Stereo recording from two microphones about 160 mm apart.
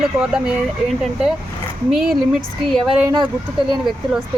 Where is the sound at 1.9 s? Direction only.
5° right (ahead or behind).